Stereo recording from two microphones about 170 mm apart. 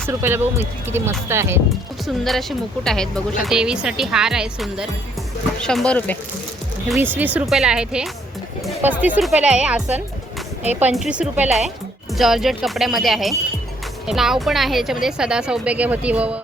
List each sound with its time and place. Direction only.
0.1 s speech: 15° right (ahead or behind)
2.2 s a woman's voice: centre (ahead or behind)
7.0 s a woman's voice: 10° right (ahead or behind)
10.8 s a woman's voice: 5° right (ahead or behind)